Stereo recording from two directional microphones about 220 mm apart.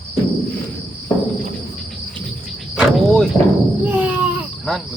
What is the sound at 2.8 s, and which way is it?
Cricket, centre (ahead or behind).